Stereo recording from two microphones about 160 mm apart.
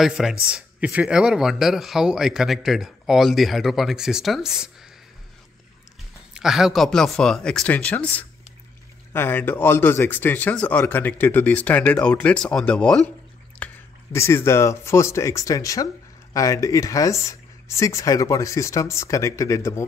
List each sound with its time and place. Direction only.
0.0 s speech: 5° right (ahead or behind)
6.3 s speech: 5° right (ahead or behind)
13.6 s drip: 10° left (ahead or behind)
14.1 s speech: 15° left (ahead or behind)